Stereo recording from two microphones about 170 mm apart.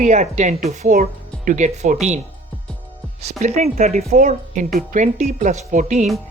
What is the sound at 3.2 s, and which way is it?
Speech, 40° right (ahead or behind).